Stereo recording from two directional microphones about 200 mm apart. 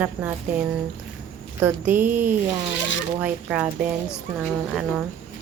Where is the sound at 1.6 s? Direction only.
10° right (ahead or behind).